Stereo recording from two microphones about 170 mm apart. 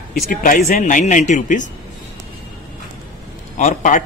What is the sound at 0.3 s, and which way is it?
A man's voice, 50° left (ahead or behind).